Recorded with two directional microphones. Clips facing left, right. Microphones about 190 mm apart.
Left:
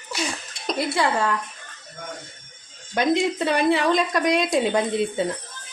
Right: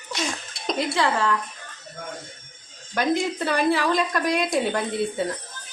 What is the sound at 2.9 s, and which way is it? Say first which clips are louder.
Speech: left 2 dB; 20° left (ahead or behind).